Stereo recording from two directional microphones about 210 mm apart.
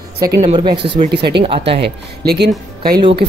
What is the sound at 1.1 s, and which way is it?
Speech, 55° right (ahead or behind).